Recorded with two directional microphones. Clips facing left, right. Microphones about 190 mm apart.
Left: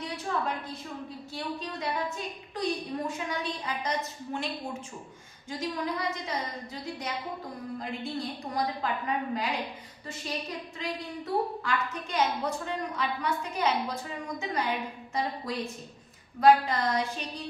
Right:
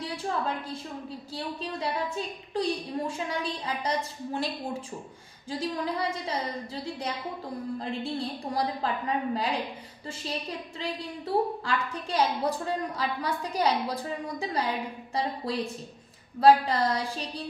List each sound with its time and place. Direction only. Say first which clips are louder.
0.0 s a sound: right 1 dB; 30° right (ahead or behind)
1.3 s a woman's voice: right 1 dB; 30° right (ahead or behind)
10.8 s a woman's voice: right 1 dB; 30° right (ahead or behind)